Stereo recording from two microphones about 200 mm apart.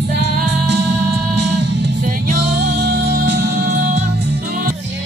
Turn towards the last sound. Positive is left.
turn(degrees=-55)  # may be behind; listen again after turning